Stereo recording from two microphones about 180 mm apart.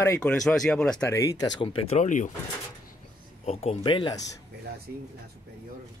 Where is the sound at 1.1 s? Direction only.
20° left (ahead or behind); by 2.3 s 40° left (ahead or behind).